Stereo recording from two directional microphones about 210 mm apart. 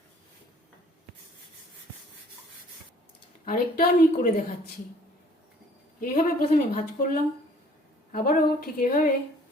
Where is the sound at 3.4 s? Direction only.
40° left (ahead or behind).